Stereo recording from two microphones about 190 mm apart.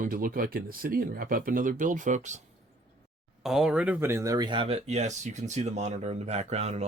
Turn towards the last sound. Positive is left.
turn(degrees=-35)  # may be behind; listen again after turning